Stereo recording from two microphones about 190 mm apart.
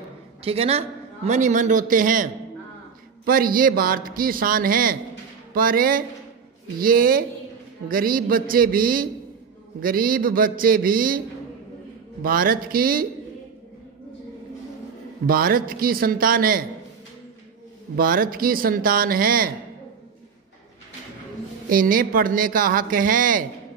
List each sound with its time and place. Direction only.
0.4 s a man's voice: 30° right (ahead or behind)
3.3 s speech: 50° right (ahead or behind)
15.2 s speech: 50° right (ahead or behind)
17.9 s speech: 50° right (ahead or behind)
21.6 s speech: 50° right (ahead or behind)